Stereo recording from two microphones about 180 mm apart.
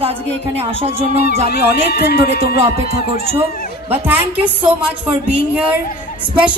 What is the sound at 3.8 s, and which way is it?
Speech, 10° right (ahead or behind).